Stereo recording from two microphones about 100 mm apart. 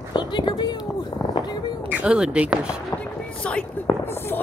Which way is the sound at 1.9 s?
10° right (ahead or behind).